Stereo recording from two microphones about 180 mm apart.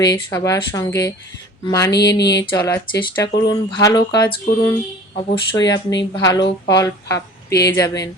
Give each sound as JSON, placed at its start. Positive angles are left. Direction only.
{"t": 0.0, "sound": "speech", "side_deg": 20}
{"t": 1.9, "sound": "speech", "side_deg": 70}
{"t": 2.6, "sound": "speech", "side_deg": 20}